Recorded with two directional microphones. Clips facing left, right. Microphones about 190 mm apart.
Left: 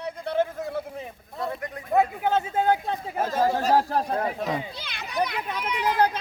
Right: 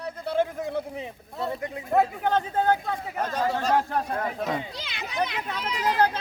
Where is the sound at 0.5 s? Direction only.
20° right (ahead or behind).